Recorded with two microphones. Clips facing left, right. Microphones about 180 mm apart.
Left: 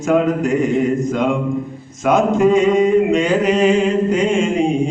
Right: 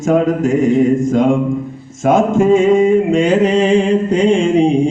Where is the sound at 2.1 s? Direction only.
50° right (ahead or behind).